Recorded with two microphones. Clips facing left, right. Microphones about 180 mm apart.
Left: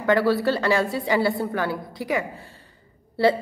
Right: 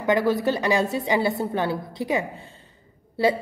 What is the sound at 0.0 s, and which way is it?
A woman's voice, 15° right (ahead or behind).